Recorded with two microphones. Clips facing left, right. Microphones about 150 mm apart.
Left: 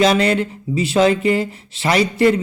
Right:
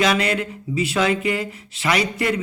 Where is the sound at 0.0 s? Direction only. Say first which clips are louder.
Left 5 dB; 30° left (ahead or behind).